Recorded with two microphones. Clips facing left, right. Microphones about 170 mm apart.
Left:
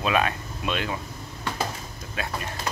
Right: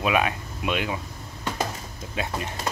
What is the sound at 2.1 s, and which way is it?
Speech, 20° right (ahead or behind).